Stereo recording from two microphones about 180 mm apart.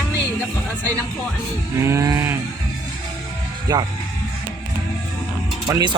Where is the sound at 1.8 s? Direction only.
15° right (ahead or behind).